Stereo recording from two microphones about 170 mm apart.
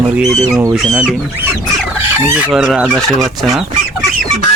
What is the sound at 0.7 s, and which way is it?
Speech, 5° right (ahead or behind).